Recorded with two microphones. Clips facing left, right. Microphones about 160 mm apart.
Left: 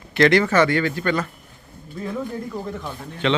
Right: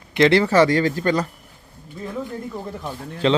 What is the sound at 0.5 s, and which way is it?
Speech, 35° right (ahead or behind).